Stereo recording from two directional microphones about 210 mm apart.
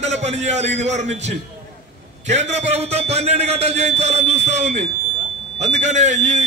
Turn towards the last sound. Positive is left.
turn(degrees=-35)  # may be behind; listen again after turning